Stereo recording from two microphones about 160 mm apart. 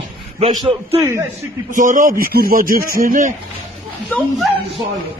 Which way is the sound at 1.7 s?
55° right (ahead or behind).